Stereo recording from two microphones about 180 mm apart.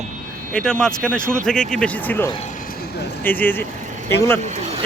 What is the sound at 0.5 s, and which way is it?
Speech, 5° left (ahead or behind).